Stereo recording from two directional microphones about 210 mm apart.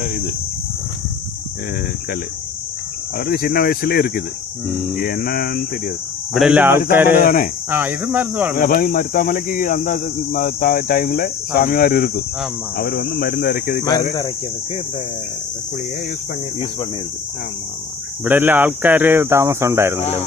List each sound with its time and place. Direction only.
3.2 s a man's voice: 45° left (ahead or behind)
6.3 s speech: 5° right (ahead or behind)
7.2 s a man's voice: 45° left (ahead or behind)
7.7 s speech: 5° right (ahead or behind)
8.5 s a man's voice: 40° left (ahead or behind)
18.2 s speech: 10° right (ahead or behind)